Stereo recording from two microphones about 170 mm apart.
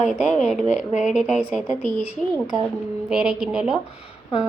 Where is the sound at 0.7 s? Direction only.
45° left (ahead or behind).